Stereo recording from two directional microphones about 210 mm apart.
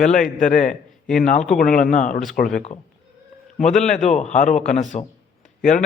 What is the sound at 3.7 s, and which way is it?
A man's voice, 35° left (ahead or behind).